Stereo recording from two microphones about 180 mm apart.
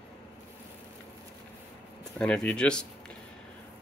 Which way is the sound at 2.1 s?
5° left (ahead or behind).